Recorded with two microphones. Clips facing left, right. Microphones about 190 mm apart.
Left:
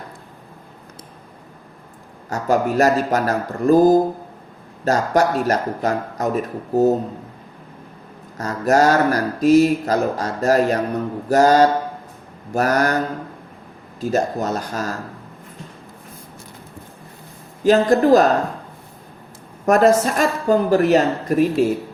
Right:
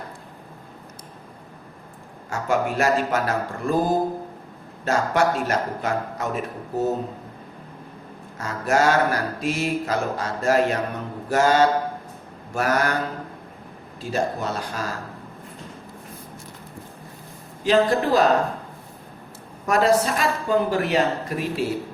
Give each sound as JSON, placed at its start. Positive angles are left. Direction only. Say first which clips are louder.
{"t": 2.3, "sound": "speech", "louder": "left 5 dB", "side_deg": 40}
{"t": 8.4, "sound": "speech", "louder": "left 5 dB", "side_deg": 40}
{"t": 14.0, "sound": "a woman's voice", "louder": "left 5 dB", "side_deg": 40}
{"t": 17.6, "sound": "a woman's voice", "louder": "left 5 dB", "side_deg": 45}
{"t": 19.6, "sound": "a woman's voice", "louder": "left 5 dB", "side_deg": 45}